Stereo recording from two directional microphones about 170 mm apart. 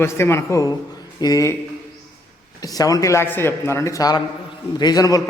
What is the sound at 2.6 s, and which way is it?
Speech, 20° left (ahead or behind).